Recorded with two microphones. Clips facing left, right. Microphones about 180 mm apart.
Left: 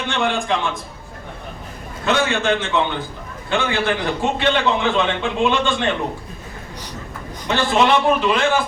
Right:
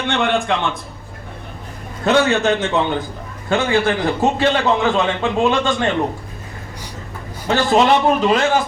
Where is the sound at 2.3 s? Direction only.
40° right (ahead or behind).